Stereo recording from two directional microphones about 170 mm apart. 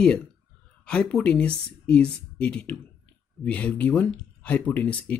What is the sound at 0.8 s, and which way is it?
Speech, 5° left (ahead or behind).